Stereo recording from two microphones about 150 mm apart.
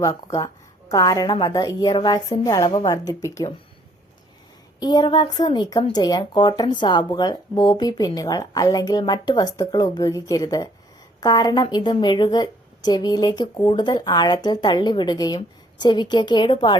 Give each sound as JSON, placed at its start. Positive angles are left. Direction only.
{"t": 0.0, "sound": "speech", "side_deg": 20}
{"t": 4.8, "sound": "speech", "side_deg": 30}